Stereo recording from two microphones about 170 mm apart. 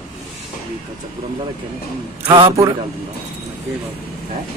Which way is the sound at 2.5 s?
20° right (ahead or behind).